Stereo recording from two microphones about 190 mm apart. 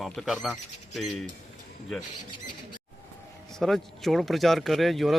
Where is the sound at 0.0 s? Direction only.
Centre (ahead or behind).